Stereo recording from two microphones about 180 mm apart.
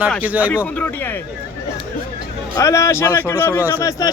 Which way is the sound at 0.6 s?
10° left (ahead or behind).